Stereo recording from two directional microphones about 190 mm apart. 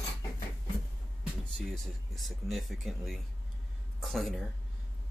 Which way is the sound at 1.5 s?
Centre (ahead or behind).